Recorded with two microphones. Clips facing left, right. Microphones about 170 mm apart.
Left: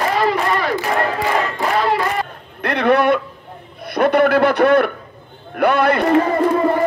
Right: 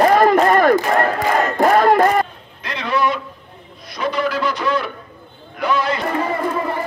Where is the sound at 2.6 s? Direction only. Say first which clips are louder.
Left 6 dB; 60° left (ahead or behind).